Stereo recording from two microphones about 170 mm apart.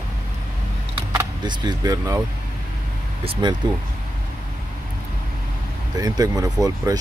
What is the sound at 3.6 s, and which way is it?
Speech, 25° right (ahead or behind).